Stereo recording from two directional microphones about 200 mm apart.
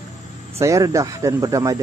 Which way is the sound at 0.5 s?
15° right (ahead or behind).